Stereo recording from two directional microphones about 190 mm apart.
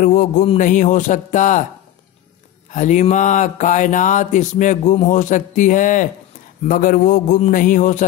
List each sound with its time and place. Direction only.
0.0 s a man's voice: 45° left (ahead or behind)
0.6 s mantra: 40° left (ahead or behind)
2.7 s mantra: 40° left (ahead or behind)
6.6 s a man's voice: 45° left (ahead or behind)